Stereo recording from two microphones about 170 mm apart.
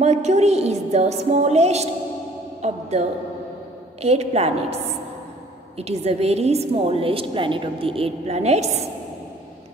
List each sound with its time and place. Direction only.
0.0 s a woman's voice: 40° right (ahead or behind)